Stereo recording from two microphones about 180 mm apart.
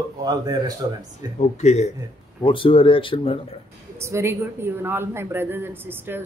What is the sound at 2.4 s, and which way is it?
Speech, 30° left (ahead or behind).